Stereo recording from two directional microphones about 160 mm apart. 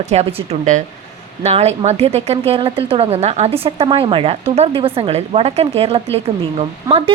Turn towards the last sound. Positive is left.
turn(degrees=-35)  # may be behind; listen again after turning